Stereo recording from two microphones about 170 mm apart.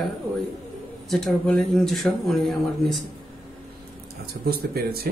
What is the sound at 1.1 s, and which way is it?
Speech, centre (ahead or behind).